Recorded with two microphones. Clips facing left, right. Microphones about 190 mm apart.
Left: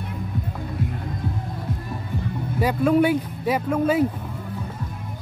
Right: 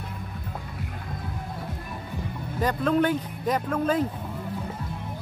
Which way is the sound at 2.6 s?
10° left (ahead or behind).